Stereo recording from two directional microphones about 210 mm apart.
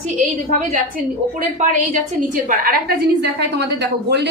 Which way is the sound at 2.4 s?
40° right (ahead or behind).